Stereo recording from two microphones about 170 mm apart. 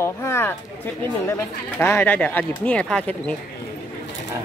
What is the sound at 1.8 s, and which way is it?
Speech, 10° left (ahead or behind).